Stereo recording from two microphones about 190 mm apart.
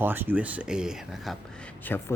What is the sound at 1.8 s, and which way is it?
Speech, 10° left (ahead or behind).